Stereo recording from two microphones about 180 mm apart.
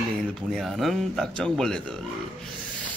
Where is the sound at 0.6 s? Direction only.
Centre (ahead or behind).